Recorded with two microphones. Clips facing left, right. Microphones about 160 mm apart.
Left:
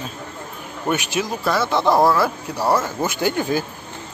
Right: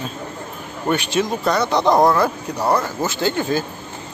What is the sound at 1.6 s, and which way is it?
Speech, 20° right (ahead or behind).